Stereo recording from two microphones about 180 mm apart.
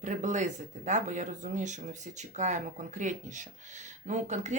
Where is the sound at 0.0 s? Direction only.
45° right (ahead or behind).